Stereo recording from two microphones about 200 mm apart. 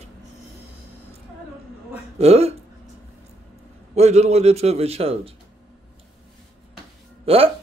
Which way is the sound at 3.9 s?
30° right (ahead or behind).